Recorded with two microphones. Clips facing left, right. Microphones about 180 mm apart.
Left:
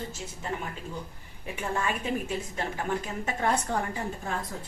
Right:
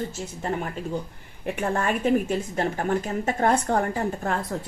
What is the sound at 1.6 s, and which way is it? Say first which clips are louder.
A woman's voice: right 5 dB; 55° right (ahead or behind).